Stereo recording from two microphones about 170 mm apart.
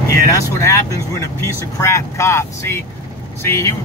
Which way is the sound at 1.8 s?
15° left (ahead or behind).